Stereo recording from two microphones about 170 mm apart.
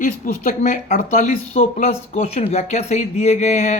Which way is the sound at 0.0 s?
50° left (ahead or behind).